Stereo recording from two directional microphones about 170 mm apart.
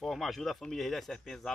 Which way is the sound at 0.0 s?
Centre (ahead or behind).